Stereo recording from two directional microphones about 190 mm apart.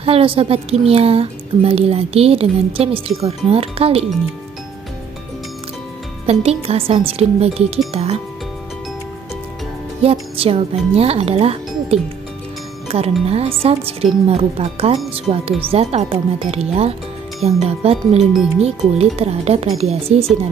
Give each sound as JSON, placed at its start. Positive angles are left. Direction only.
{"t": 0.0, "sound": "speech", "side_deg": -30}
{"t": 6.3, "sound": "speech", "side_deg": -30}
{"t": 10.0, "sound": "speech", "side_deg": -30}